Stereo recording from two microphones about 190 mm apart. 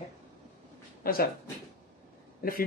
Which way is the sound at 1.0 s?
50° left (ahead or behind).